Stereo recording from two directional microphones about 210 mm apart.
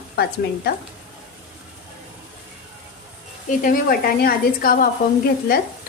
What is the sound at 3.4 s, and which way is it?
A woman's voice, 40° left (ahead or behind).